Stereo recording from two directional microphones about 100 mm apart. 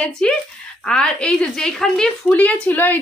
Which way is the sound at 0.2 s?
10° left (ahead or behind).